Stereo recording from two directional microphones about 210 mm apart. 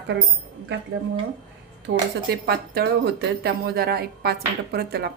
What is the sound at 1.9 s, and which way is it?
Speech, 65° right (ahead or behind).